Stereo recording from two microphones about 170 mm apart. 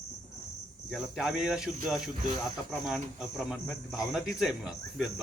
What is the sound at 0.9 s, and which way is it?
A man's voice, 5° right (ahead or behind).